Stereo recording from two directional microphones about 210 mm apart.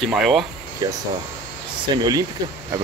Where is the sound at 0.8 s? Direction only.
15° right (ahead or behind).